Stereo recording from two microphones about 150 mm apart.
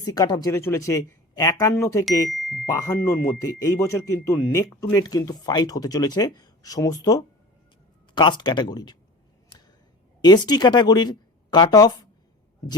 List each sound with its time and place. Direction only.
0.0 s speech: 25° left (ahead or behind)
2.3 s a sound: centre (ahead or behind)
2.6 s speech: 20° left (ahead or behind)
10.2 s speech: 30° left (ahead or behind)